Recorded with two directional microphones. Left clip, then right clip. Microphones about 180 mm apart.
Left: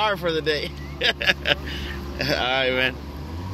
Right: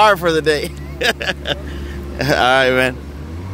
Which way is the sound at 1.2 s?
30° right (ahead or behind).